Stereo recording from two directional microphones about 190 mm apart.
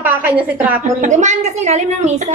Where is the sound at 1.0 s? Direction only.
40° right (ahead or behind).